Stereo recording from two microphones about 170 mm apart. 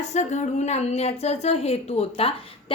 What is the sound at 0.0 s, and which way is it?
A woman's voice, 45° left (ahead or behind).